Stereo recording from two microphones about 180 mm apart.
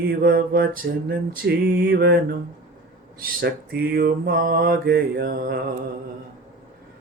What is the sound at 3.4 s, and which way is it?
Mantra, 65° right (ahead or behind).